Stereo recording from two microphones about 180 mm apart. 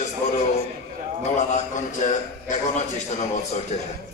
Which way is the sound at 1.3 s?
45° left (ahead or behind).